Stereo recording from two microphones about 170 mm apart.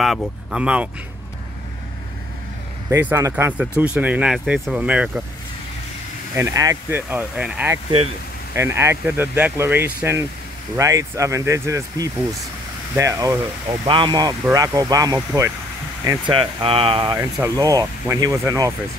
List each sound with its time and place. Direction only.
0.0 s speech: centre (ahead or behind)
2.9 s speech: 15° right (ahead or behind)
6.3 s speech: 20° right (ahead or behind)
16.3 s speech: 30° right (ahead or behind); by 18.7 s 15° right (ahead or behind)